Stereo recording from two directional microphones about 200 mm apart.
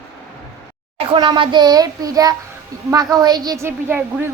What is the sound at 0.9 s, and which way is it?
A woman's voice, 25° right (ahead or behind).